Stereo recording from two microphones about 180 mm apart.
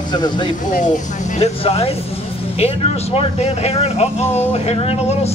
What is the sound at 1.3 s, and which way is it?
Speech, 35° left (ahead or behind).